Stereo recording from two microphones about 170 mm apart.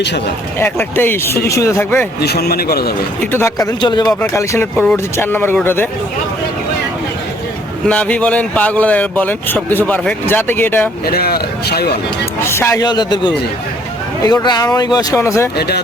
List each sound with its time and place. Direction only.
0.6 s speech: 10° left (ahead or behind)
2.2 s speech: 65° left (ahead or behind)
3.3 s speech: 15° left (ahead or behind)
3.8 s speech: 25° left (ahead or behind)
4.2 s speech: 15° left (ahead or behind)
7.9 s speech: 5° left (ahead or behind)
11.0 s speech: 65° left (ahead or behind)
12.5 s speech: 15° left (ahead or behind)
15.5 s speech: 70° left (ahead or behind)